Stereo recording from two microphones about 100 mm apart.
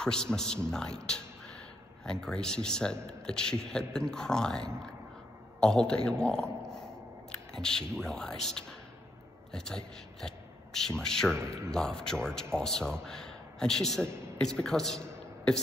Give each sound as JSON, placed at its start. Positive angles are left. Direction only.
{"t": 0.0, "sound": "a man's voice", "side_deg": 5}
{"t": 11.3, "sound": "a man's voice", "side_deg": -30}
{"t": 11.7, "sound": "a man's voice", "side_deg": 5}